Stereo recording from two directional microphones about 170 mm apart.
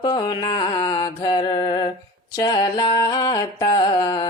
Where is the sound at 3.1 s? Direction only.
25° left (ahead or behind).